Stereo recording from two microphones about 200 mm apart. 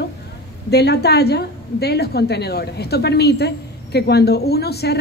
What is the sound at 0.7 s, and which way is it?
A woman's voice, 55° left (ahead or behind).